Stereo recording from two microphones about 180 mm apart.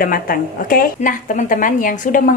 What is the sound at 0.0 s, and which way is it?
A woman's voice, 50° left (ahead or behind).